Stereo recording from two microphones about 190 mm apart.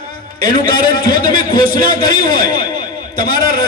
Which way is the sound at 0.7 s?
50° left (ahead or behind).